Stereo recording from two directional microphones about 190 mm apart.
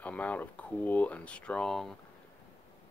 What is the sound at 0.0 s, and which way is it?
Speech, 10° left (ahead or behind).